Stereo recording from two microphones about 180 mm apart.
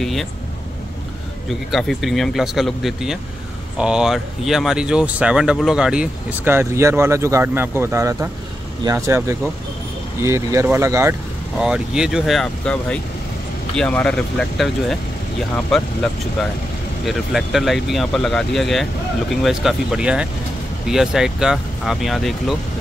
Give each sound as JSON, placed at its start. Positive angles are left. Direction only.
{"t": 0.0, "sound": "speech", "side_deg": 0}
{"t": 1.7, "sound": "speech", "side_deg": 0}
{"t": 11.6, "sound": "speech", "side_deg": -5}